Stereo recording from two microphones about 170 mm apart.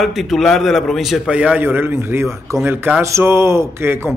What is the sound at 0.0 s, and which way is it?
A man's voice, centre (ahead or behind).